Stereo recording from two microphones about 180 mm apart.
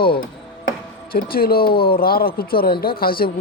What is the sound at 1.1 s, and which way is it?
Speech, 55° left (ahead or behind).